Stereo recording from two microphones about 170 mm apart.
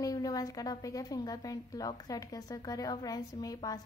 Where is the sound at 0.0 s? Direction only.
20° left (ahead or behind).